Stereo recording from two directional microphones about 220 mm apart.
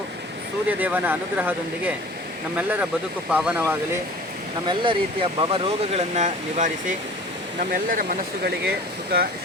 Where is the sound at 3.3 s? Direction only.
5° right (ahead or behind).